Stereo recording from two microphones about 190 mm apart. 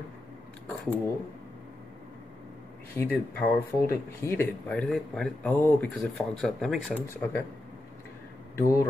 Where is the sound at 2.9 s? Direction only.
5° left (ahead or behind).